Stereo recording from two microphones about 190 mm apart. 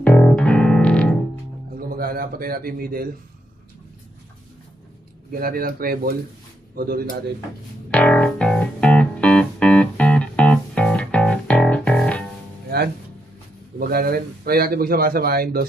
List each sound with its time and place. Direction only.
0.0 s music: 5° left (ahead or behind)
1.8 s a man's voice: 50° right (ahead or behind)
5.4 s speech: 50° right (ahead or behind)
7.9 s music: 5° left (ahead or behind)
12.6 s music: 55° right (ahead or behind)
13.7 s speech: 50° right (ahead or behind)